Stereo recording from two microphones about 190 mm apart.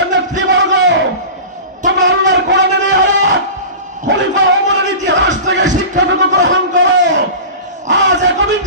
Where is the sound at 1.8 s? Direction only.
70° right (ahead or behind).